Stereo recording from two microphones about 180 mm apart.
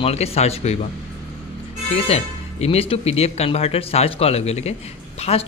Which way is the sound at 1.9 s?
35° left (ahead or behind).